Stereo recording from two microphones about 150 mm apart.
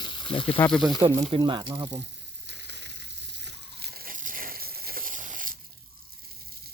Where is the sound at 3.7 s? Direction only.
90° right; by 5.5 s 60° right (ahead or behind).